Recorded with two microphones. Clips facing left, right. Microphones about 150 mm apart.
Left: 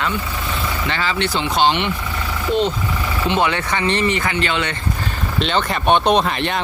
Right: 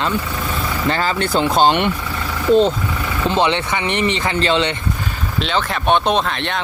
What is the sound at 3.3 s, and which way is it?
Speech, 25° right (ahead or behind).